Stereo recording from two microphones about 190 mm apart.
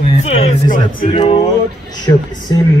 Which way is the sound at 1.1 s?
25° left (ahead or behind).